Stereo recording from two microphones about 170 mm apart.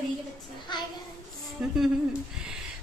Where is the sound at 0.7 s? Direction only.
25° left (ahead or behind).